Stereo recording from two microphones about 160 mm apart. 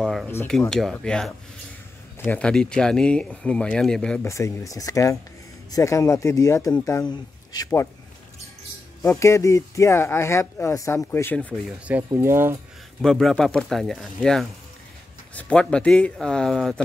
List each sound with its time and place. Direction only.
0.0 s a sound: centre (ahead or behind)
0.5 s speech: 5° left (ahead or behind)
4.3 s speech: 20° left (ahead or behind)
9.0 s speech: 15° left (ahead or behind)
12.1 s speech: 15° right (ahead or behind)
13.0 s speech: centre (ahead or behind)